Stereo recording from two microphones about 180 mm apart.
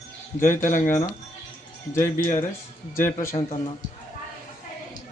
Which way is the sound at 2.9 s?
15° left (ahead or behind).